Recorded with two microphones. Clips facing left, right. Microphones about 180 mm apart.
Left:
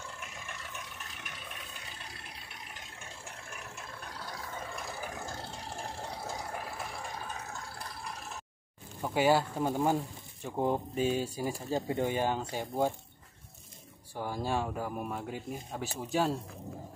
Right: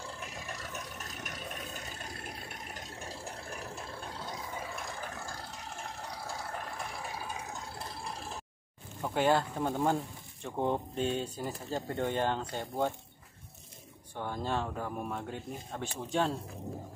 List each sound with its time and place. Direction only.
0.0 s vehicle: 35° right (ahead or behind)
9.0 s speech: 5° left (ahead or behind)
14.1 s speech: 5° left (ahead or behind)